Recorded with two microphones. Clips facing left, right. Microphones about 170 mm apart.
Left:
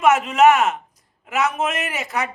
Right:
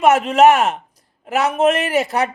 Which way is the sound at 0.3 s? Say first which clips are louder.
Right 3 dB; 30° right (ahead or behind).